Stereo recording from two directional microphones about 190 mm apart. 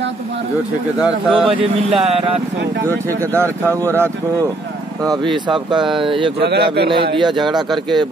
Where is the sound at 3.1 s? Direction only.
15° right (ahead or behind).